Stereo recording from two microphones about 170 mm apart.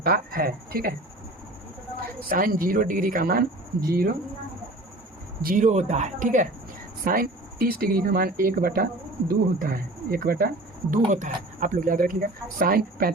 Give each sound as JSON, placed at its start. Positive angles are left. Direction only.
{"t": 0.0, "sound": "speech", "side_deg": -60}
{"t": 2.3, "sound": "speech", "side_deg": -55}
{"t": 5.4, "sound": "speech", "side_deg": -55}
{"t": 11.1, "sound": "speech", "side_deg": -50}